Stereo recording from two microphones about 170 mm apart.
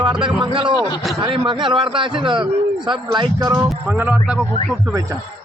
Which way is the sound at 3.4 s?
15° right (ahead or behind).